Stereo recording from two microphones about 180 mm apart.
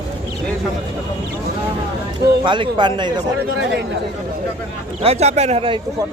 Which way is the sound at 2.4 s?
25° right (ahead or behind).